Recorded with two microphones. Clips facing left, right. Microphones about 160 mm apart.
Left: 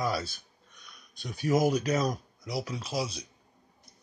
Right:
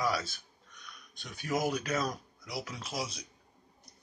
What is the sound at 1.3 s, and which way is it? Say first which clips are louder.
Speech: left 6 dB; 40° left (ahead or behind).